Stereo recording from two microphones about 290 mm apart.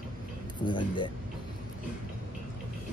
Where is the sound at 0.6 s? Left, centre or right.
Centre.